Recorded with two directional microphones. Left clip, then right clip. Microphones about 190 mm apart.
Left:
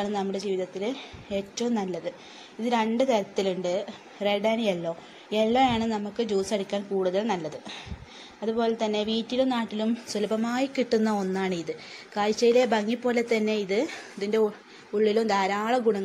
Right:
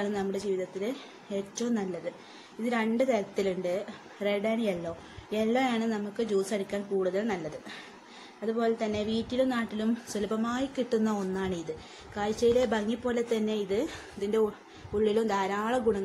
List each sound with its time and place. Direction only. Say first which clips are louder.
0.0 s a woman's voice: left 2 dB; 10° left (ahead or behind)